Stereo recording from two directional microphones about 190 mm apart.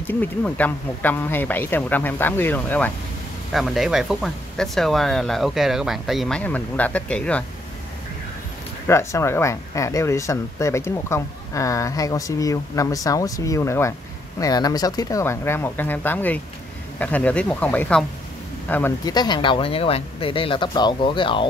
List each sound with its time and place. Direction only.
0.0 s speech: 10° left (ahead or behind)
8.8 s speech: 15° left (ahead or behind)